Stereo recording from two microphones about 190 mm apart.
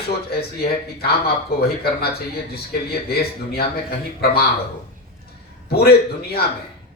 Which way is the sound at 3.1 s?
55° left (ahead or behind).